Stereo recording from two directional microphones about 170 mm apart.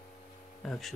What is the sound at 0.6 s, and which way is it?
Speech, centre (ahead or behind).